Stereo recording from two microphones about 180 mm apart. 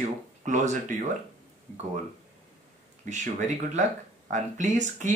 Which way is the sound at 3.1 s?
40° right (ahead or behind).